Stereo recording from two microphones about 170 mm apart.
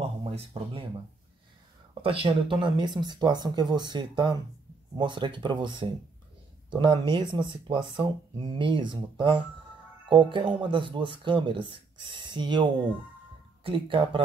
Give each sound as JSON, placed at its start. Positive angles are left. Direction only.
{"t": 0.2, "sound": "speech", "side_deg": -30}
{"t": 2.0, "sound": "speech", "side_deg": -35}
{"t": 13.7, "sound": "speech", "side_deg": -30}